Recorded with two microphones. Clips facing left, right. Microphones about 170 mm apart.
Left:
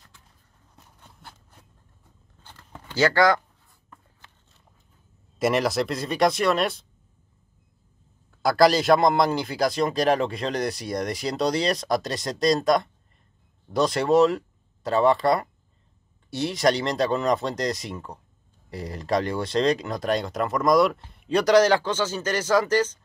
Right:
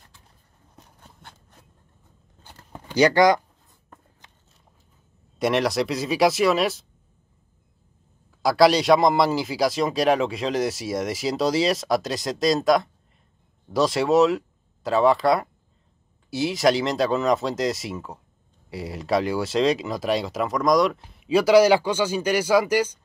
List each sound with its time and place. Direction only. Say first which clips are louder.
2.7 s speech: right 4 dB; 15° right (ahead or behind)
5.4 s speech: right 1 dB; centre (ahead or behind)
8.3 s a man's voice: right 1 dB; centre (ahead or behind)